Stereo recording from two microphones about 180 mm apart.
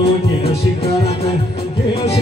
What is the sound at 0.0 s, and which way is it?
Music, 35° left (ahead or behind).